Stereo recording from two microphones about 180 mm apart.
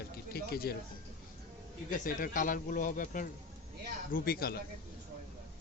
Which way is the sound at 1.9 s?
50° left (ahead or behind).